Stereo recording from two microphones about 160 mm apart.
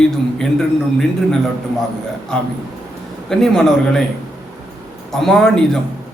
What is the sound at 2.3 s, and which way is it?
A man's voice, 5° left (ahead or behind).